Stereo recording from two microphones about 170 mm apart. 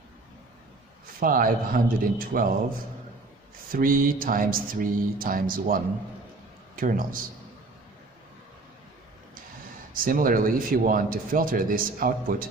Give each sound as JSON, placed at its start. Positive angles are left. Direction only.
{"t": 1.2, "sound": "speech", "side_deg": -55}
{"t": 3.7, "sound": "a man's voice", "side_deg": -55}
{"t": 9.9, "sound": "speech", "side_deg": -55}